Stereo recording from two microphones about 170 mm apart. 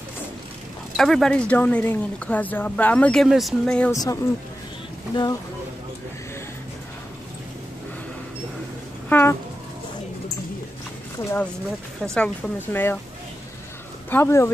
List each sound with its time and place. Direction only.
0.9 s speech: centre (ahead or behind)
3.9 s speech: 20° left (ahead or behind)
9.1 s speech: 15° left (ahead or behind)
12.1 s speech: 10° left (ahead or behind)
14.1 s speech: 15° left (ahead or behind)